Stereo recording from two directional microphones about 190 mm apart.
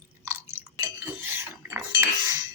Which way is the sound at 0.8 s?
15° right (ahead or behind).